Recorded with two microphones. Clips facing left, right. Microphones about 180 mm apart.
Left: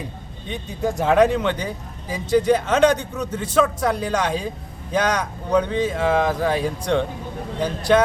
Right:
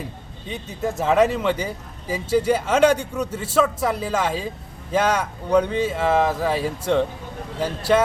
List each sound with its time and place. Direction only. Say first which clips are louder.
0.4 s speech: left 2 dB; 5° right (ahead or behind)